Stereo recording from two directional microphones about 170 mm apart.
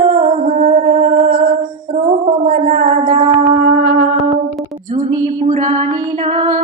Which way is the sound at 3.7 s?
90° right.